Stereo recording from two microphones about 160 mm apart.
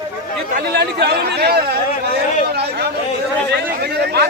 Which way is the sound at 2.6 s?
90° right.